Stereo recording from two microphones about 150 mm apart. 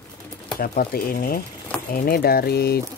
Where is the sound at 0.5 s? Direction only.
80° left.